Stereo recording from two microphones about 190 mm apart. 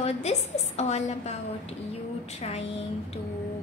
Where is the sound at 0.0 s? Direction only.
35° left (ahead or behind).